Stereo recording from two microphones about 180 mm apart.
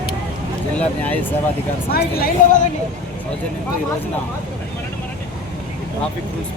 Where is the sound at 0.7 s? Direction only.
10° left (ahead or behind).